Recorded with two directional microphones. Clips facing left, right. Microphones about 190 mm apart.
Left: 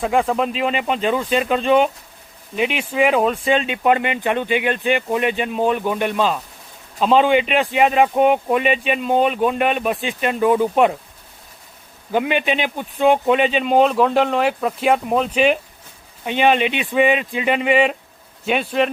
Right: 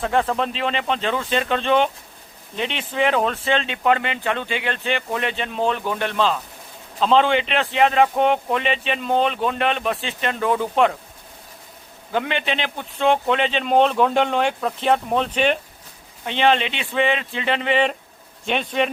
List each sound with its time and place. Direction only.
0.0 s speech: 10° left (ahead or behind)
12.1 s speech: 15° left (ahead or behind)